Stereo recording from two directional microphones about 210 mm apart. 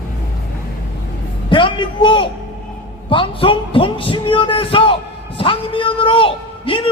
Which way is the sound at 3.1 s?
25° left (ahead or behind).